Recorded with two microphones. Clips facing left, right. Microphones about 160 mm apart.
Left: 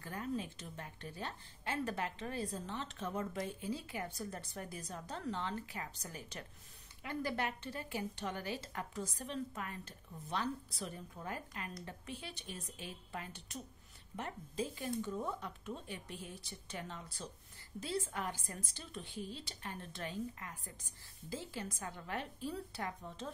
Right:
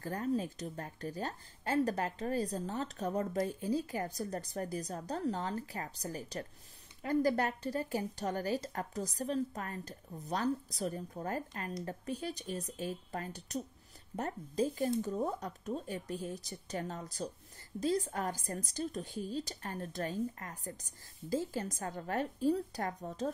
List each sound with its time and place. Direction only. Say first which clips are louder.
0.0 s a woman's voice: right 6 dB; 40° right (ahead or behind)